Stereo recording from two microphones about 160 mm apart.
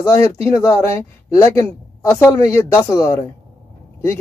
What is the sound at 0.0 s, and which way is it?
Speech, 15° left (ahead or behind).